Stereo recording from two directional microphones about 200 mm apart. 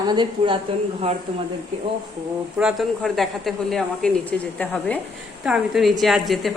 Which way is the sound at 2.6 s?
Centre (ahead or behind).